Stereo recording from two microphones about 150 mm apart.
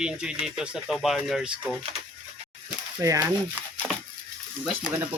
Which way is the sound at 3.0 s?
20° right (ahead or behind).